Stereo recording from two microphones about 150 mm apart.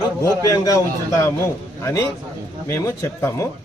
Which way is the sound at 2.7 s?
20° left (ahead or behind).